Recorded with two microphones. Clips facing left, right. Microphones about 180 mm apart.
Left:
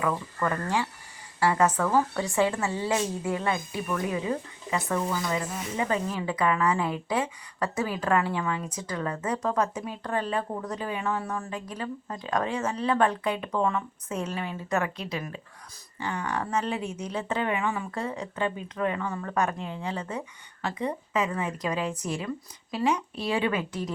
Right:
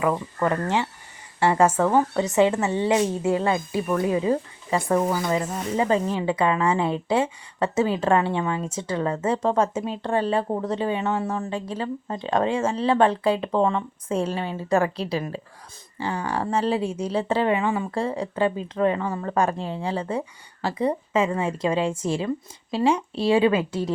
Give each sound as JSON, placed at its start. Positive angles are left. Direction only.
{"t": 0.4, "sound": "a woman's voice", "side_deg": -30}